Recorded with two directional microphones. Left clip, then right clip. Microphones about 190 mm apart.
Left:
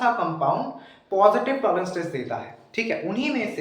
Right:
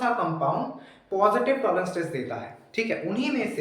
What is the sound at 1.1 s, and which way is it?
Speech, 10° left (ahead or behind).